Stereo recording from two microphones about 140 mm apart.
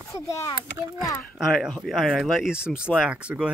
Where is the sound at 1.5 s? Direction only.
Centre (ahead or behind).